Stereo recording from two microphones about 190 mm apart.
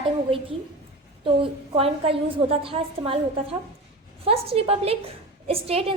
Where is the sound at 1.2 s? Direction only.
30° right (ahead or behind).